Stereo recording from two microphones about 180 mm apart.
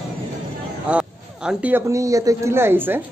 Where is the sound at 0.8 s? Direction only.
5° right (ahead or behind).